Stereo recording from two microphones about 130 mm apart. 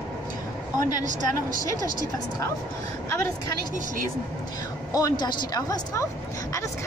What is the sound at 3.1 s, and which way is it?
Speech, 20° left (ahead or behind).